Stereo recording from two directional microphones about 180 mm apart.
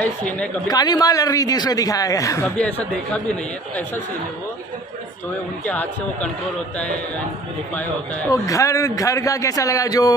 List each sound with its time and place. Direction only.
0.0 s speech: 5° left (ahead or behind)
0.7 s a man's voice: 20° left (ahead or behind)
2.4 s speech: 5° left (ahead or behind)
5.7 s speech: 5° left (ahead or behind)
8.3 s a man's voice: 20° left (ahead or behind)